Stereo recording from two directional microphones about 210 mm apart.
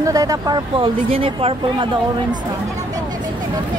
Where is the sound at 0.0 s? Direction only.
15° right (ahead or behind).